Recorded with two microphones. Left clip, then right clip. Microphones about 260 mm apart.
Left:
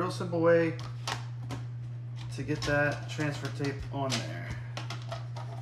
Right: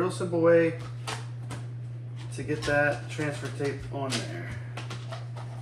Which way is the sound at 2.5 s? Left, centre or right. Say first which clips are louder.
Right 4 dB; left.